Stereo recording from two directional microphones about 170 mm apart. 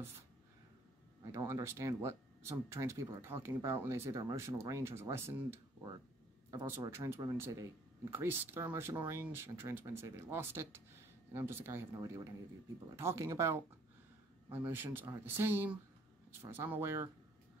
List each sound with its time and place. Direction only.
1.2 s speech: 20° right (ahead or behind)